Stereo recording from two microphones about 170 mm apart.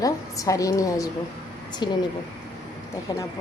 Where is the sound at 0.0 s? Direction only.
20° left (ahead or behind).